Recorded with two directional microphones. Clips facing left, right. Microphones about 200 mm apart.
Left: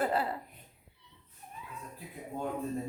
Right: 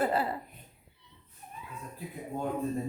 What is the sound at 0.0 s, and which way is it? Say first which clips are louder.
Speech: right 2 dB; 5° right (ahead or behind).